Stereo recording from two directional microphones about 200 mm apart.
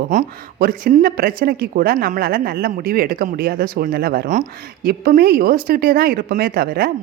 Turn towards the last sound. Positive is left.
turn(degrees=-45)  # may be behind; listen again after turning